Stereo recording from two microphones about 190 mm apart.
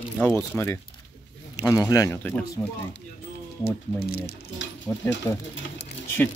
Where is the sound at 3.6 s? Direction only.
55° left (ahead or behind).